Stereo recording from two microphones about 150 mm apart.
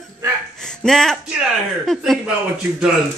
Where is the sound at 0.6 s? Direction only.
5° left (ahead or behind).